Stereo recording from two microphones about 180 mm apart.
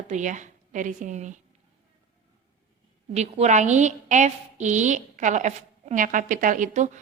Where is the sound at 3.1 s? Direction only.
40° right (ahead or behind).